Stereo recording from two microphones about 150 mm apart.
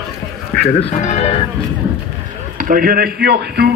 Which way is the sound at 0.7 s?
45° left (ahead or behind).